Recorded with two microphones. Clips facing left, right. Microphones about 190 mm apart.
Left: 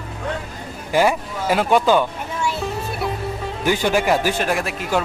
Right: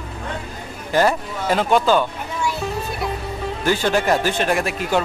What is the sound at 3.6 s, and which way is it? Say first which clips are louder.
Speech: even; 15° left (ahead or behind).